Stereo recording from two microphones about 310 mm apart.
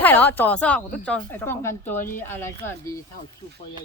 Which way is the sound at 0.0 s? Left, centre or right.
Centre.